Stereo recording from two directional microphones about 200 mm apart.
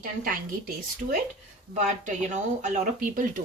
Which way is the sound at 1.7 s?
40° right (ahead or behind).